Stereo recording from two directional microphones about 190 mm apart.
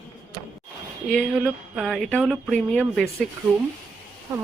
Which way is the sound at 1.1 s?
Centre (ahead or behind).